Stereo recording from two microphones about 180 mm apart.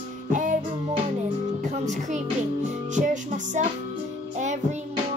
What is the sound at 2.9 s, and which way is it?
Music, 45° right (ahead or behind).